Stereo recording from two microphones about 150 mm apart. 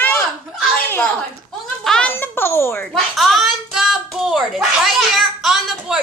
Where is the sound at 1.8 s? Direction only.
5° left (ahead or behind).